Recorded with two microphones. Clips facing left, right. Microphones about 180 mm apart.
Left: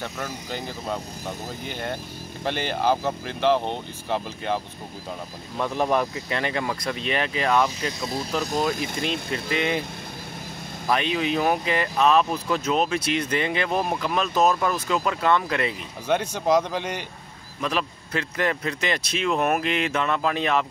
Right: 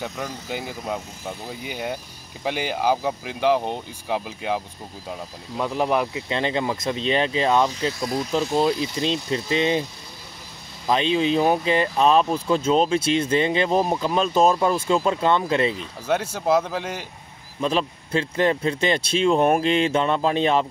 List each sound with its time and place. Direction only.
0.0 s speech: 5° right (ahead or behind)
5.6 s speech: 10° right (ahead or behind)
6.2 s speech: 25° right (ahead or behind)
8.5 s speech: 50° left (ahead or behind)
9.3 s speech: 25° right (ahead or behind)
10.9 s speech: 25° right (ahead or behind)
16.1 s speech: 5° right (ahead or behind)
17.6 s speech: 30° right (ahead or behind)